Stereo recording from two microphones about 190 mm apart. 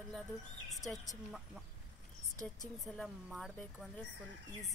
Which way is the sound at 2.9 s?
Centre (ahead or behind).